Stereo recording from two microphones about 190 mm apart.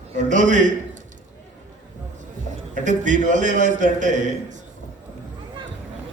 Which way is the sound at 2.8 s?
40° right (ahead or behind).